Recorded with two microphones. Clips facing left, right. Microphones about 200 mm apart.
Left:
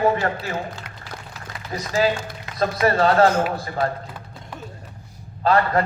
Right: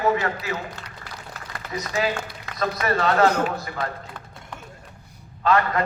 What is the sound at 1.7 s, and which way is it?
A man's voice, 30° left (ahead or behind).